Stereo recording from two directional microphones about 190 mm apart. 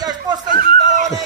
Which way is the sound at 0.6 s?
40° right (ahead or behind).